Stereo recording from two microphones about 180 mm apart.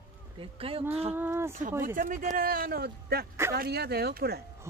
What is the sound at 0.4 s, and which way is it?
Speech, 30° right (ahead or behind).